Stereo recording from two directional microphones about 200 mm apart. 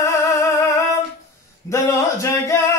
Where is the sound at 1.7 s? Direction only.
15° left (ahead or behind).